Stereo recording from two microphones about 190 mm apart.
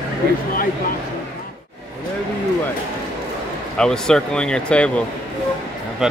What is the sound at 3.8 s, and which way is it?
Speech, 5° left (ahead or behind).